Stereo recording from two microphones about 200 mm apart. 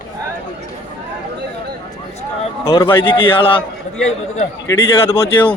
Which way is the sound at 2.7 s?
25° left (ahead or behind).